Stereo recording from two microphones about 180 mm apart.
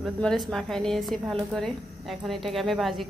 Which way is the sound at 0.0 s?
Centre (ahead or behind).